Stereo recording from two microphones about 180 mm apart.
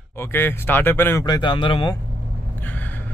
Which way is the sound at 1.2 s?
25° left (ahead or behind).